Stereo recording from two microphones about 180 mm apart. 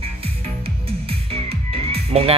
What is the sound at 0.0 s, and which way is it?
Music, 30° right (ahead or behind).